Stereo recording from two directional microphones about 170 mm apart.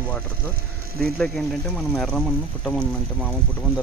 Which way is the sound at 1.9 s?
5° left (ahead or behind).